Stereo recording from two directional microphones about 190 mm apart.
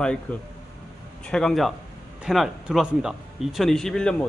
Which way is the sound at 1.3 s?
5° left (ahead or behind).